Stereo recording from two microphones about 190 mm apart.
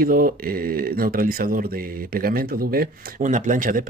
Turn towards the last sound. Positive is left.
turn(degrees=-45)  # may be behind; listen again after turning